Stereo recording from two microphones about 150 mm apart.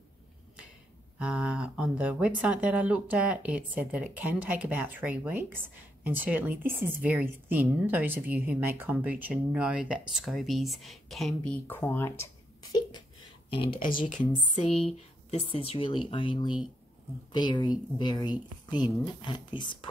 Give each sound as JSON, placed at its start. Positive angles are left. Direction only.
{"t": 1.1, "sound": "speech", "side_deg": -5}
{"t": 13.5, "sound": "speech", "side_deg": 35}
{"t": 13.8, "sound": "speech", "side_deg": 65}
{"t": 14.9, "sound": "speech", "side_deg": 40}